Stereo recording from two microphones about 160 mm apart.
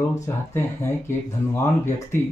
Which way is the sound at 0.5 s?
15° left (ahead or behind).